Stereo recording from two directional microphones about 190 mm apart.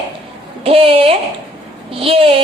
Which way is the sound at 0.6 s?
30° right (ahead or behind).